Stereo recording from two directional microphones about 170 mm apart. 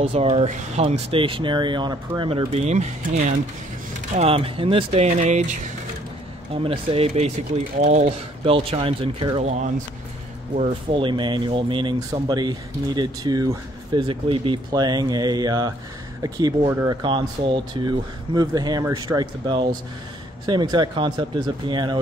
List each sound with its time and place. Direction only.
0.0 s speech: 35° right (ahead or behind)
11.0 s speech: 30° right (ahead or behind)